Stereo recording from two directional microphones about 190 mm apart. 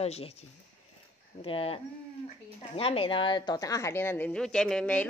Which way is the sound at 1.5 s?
30° left (ahead or behind).